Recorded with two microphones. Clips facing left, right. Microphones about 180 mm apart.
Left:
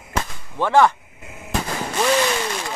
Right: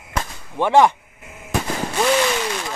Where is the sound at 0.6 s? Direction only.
15° right (ahead or behind).